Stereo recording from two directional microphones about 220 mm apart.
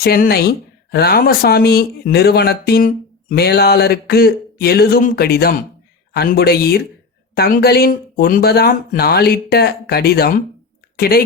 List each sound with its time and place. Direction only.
0.0 s speech: 45° left (ahead or behind)